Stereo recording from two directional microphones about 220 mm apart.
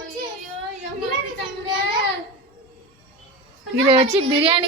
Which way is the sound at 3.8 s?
25° right (ahead or behind).